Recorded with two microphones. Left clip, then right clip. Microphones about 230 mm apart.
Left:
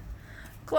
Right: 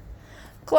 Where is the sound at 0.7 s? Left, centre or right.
Right.